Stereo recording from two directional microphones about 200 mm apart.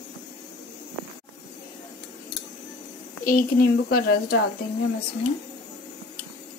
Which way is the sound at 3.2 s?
45° left (ahead or behind).